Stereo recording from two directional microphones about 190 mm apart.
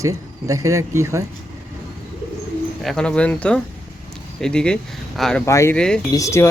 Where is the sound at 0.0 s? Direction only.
15° right (ahead or behind).